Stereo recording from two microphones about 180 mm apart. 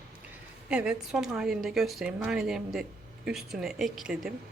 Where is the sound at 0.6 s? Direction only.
5° right (ahead or behind).